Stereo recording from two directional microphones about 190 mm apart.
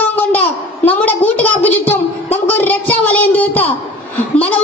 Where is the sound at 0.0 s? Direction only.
10° left (ahead or behind).